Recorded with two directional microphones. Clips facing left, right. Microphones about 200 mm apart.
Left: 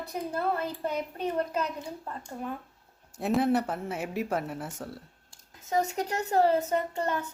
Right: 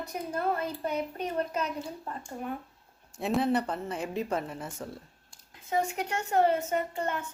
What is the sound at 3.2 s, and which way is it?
A woman's voice, centre (ahead or behind).